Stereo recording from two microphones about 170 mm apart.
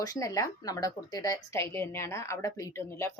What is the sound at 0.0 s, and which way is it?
Speech, 20° left (ahead or behind).